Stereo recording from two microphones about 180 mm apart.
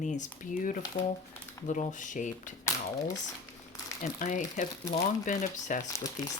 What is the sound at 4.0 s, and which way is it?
Speech, 45° left (ahead or behind).